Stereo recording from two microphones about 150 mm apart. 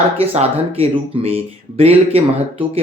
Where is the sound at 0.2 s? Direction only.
40° right (ahead or behind).